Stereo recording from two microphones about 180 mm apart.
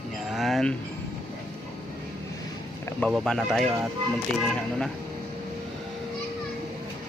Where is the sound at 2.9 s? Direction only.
5° left (ahead or behind).